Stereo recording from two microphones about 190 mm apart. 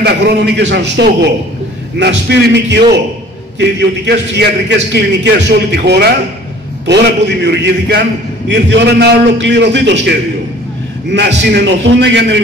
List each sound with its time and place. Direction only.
0.0 s a man's voice: 65° right (ahead or behind)